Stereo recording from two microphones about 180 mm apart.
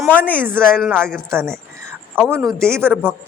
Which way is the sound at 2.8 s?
10° right (ahead or behind).